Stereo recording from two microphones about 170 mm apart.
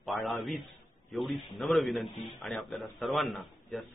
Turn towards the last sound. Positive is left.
turn(degrees=0)  # may be behind; listen again after turning